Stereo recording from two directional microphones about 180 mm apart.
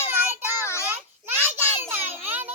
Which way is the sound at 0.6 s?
15° left (ahead or behind).